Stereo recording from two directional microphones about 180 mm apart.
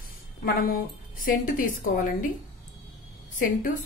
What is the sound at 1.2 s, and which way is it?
Speech, 50° left (ahead or behind).